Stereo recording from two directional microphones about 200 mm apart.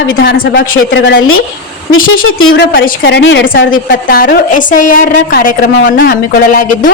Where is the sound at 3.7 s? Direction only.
45° left (ahead or behind).